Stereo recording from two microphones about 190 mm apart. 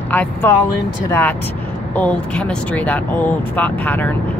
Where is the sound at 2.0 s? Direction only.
5° left (ahead or behind).